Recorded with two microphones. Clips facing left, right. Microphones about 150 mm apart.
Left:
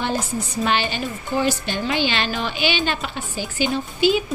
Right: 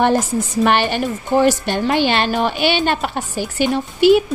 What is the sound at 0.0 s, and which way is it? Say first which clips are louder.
A woman's voice: right 8 dB; 80° right.